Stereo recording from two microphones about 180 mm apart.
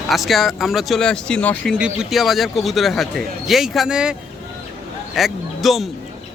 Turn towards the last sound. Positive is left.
turn(degrees=0)  # may be behind; listen again after turning